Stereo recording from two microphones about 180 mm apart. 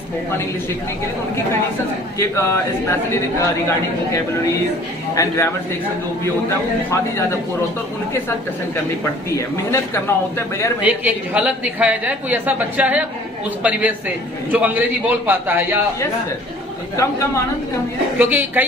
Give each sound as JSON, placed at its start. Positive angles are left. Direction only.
{"t": 2.1, "sound": "a man's voice", "side_deg": 15}
{"t": 5.1, "sound": "a man's voice", "side_deg": 15}
{"t": 6.9, "sound": "a man's voice", "side_deg": 15}
{"t": 9.7, "sound": "a man's voice", "side_deg": 15}
{"t": 10.8, "sound": "a woman's voice", "side_deg": -10}
{"t": 18.2, "sound": "a woman's voice", "side_deg": -10}